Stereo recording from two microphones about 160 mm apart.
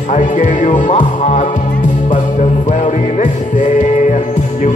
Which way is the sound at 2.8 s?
50° left (ahead or behind).